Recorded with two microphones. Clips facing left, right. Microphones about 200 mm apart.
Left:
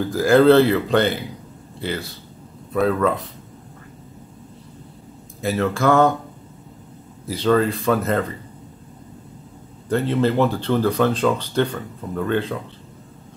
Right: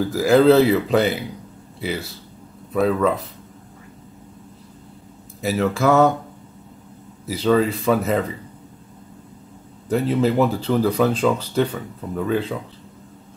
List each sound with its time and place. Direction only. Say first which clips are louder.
0.0 s speech: even; 5° right (ahead or behind)
5.4 s speech: even; 5° right (ahead or behind)
7.2 s speech: even; 5° right (ahead or behind)
9.8 s speech: even; 5° right (ahead or behind)